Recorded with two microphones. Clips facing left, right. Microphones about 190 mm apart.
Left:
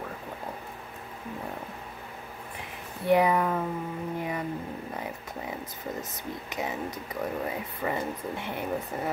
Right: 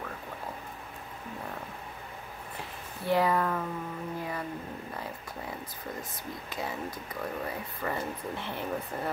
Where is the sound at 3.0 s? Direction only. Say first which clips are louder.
Left 4 dB; 15° left (ahead or behind).